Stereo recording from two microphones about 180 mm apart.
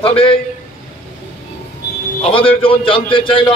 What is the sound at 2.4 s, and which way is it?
A man's voice, 30° left (ahead or behind).